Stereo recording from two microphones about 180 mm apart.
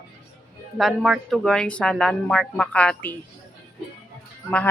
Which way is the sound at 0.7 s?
Centre (ahead or behind).